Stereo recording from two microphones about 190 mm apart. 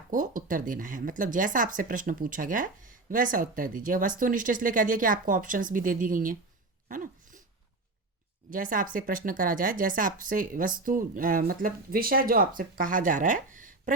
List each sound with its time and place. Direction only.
0.1 s speech: 45° right (ahead or behind)
6.8 s a sound: 45° right (ahead or behind)
8.4 s speech: 45° right (ahead or behind)